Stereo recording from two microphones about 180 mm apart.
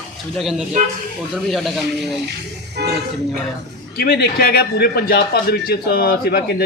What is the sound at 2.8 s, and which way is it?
Speech, 65° right (ahead or behind).